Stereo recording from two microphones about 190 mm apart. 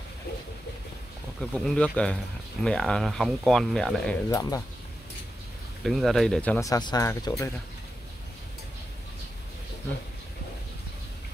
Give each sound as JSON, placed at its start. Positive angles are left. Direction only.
{"t": 1.4, "sound": "speech", "side_deg": 5}
{"t": 4.3, "sound": "speech", "side_deg": 20}
{"t": 5.9, "sound": "speech", "side_deg": 0}
{"t": 6.6, "sound": "speech", "side_deg": 20}